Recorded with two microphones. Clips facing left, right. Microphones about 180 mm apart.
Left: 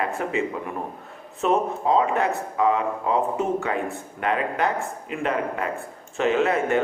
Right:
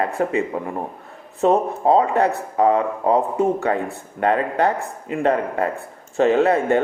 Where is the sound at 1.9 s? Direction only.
40° right (ahead or behind).